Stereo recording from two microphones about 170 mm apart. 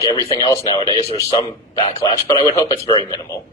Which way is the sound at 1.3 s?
40° left (ahead or behind).